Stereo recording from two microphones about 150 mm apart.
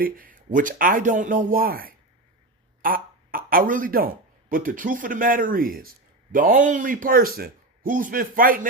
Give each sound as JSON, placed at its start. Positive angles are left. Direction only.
{"t": 0.0, "sound": "speech", "side_deg": -70}